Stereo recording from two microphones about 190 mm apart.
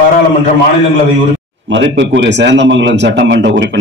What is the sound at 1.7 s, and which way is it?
A man's voice, 70° right (ahead or behind).